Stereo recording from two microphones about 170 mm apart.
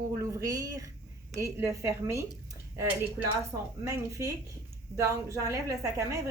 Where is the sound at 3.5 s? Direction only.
20° right (ahead or behind).